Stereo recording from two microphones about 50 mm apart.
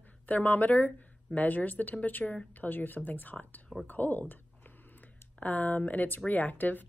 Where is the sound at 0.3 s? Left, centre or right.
Left.